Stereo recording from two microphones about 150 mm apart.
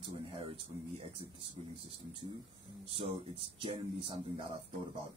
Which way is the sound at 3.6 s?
35° right (ahead or behind).